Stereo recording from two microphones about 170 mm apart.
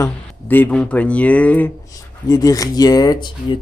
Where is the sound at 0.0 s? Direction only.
10° left (ahead or behind).